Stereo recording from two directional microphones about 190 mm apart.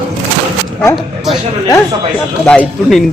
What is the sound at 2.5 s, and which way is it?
Speech, 5° left (ahead or behind).